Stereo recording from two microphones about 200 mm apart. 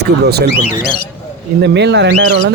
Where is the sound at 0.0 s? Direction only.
55° right (ahead or behind).